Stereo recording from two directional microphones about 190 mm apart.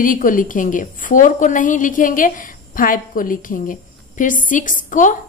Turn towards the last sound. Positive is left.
turn(degrees=40)  # may be behind; listen again after turning